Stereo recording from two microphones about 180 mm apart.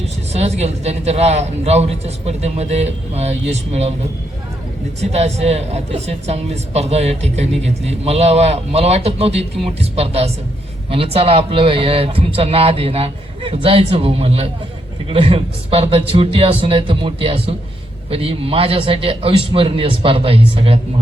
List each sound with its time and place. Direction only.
0.0 s a woman's voice: 35° right (ahead or behind)
5.1 s a woman's voice: 35° right (ahead or behind)